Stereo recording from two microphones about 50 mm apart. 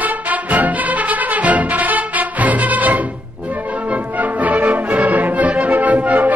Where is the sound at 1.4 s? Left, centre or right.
Right.